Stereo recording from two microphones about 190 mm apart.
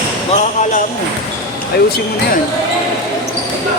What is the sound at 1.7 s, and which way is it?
Speech, 55° left (ahead or behind).